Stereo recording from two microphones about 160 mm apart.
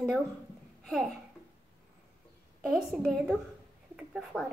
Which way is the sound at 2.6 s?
5° right (ahead or behind).